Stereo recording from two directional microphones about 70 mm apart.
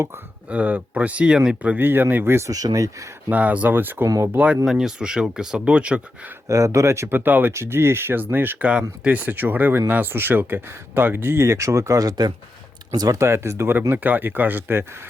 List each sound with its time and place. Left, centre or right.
0.4 s speech: right
1.8 s speech: right
2.5 s speech: right
3.2 s speech: right
4.6 s speech: centre
6.5 s speech: right
13.1 s speech: right
13.9 s speech: right